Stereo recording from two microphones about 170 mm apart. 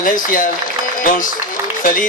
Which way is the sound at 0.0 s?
50° left (ahead or behind).